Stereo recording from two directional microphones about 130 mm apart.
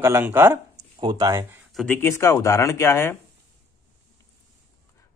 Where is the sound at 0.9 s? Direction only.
35° right (ahead or behind).